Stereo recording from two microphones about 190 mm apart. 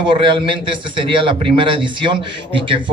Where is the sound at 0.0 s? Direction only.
25° right (ahead or behind).